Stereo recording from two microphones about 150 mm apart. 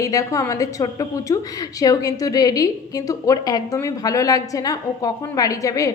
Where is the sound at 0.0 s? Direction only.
25° left (ahead or behind).